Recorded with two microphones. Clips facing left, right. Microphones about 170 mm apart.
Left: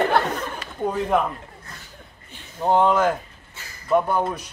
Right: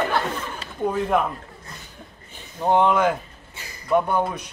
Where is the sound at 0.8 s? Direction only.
Centre (ahead or behind).